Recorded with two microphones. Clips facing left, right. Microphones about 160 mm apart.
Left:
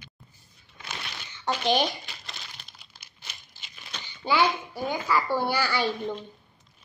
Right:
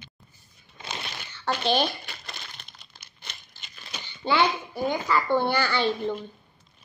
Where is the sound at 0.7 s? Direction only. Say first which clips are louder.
Right 3 dB; 25° right (ahead or behind).